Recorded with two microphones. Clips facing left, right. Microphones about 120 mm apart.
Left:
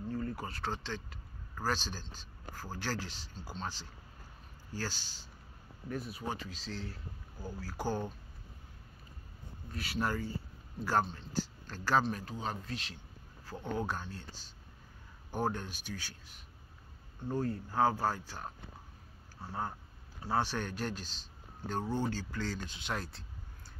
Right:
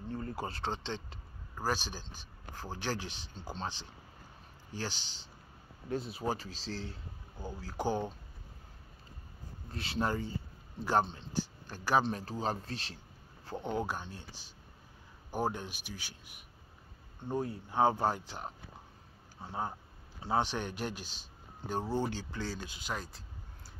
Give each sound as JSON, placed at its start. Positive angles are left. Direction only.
{"t": 0.1, "sound": "speech", "side_deg": -30}
{"t": 1.5, "sound": "speech", "side_deg": -15}
{"t": 4.7, "sound": "speech", "side_deg": -20}
{"t": 9.7, "sound": "speech", "side_deg": -25}
{"t": 11.6, "sound": "speech", "side_deg": -15}
{"t": 12.0, "sound": "speech", "side_deg": -25}